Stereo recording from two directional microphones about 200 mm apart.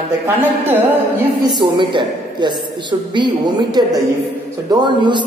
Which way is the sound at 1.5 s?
20° right (ahead or behind).